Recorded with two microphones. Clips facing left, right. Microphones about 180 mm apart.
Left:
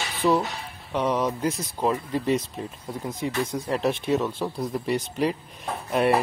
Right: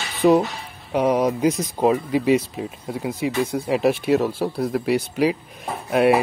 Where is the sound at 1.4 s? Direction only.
20° right (ahead or behind).